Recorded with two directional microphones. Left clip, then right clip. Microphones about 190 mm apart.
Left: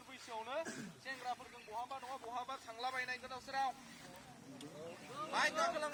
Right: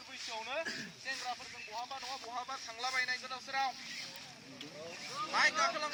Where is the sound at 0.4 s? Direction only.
15° left (ahead or behind).